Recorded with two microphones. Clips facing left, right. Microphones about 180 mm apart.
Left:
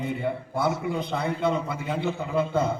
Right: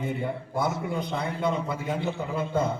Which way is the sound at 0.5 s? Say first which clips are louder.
Left 1 dB; 45° right (ahead or behind).